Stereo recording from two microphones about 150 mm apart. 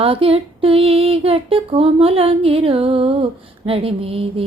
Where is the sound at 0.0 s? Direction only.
40° right (ahead or behind).